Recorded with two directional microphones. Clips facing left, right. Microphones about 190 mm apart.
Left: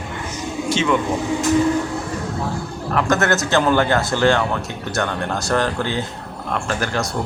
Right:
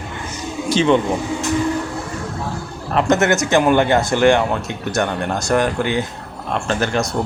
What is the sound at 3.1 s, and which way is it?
Speech, 20° right (ahead or behind).